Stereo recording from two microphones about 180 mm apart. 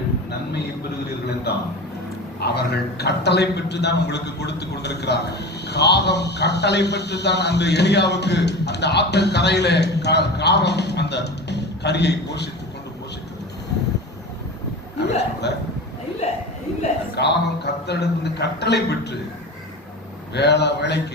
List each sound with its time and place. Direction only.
1.5 s a man's voice: 65° left (ahead or behind)
14.9 s hiccup: 70° left (ahead or behind)
16.2 s chuckle: 35° left (ahead or behind)
17.2 s a man's voice: 70° left (ahead or behind)
20.3 s a man's voice: 70° left (ahead or behind)